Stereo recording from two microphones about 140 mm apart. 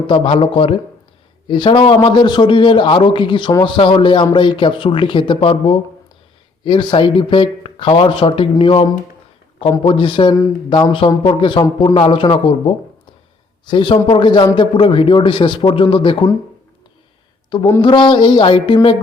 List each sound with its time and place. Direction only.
0.1 s a man's voice: 40° left (ahead or behind)
17.5 s a man's voice: 35° left (ahead or behind)